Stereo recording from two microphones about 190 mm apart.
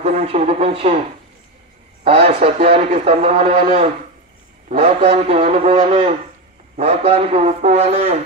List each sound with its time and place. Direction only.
0.0 s a man's voice: 35° right (ahead or behind)
2.0 s a man's voice: 30° right (ahead or behind)